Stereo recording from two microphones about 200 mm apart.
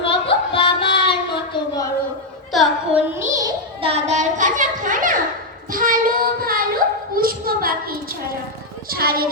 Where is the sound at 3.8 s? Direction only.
30° right (ahead or behind).